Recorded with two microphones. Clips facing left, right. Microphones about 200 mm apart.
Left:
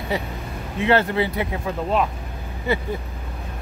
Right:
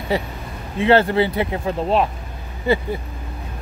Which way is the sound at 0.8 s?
30° right (ahead or behind).